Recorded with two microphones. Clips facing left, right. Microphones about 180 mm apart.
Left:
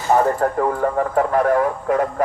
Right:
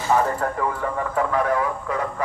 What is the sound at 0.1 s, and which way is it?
Speech, 45° left (ahead or behind).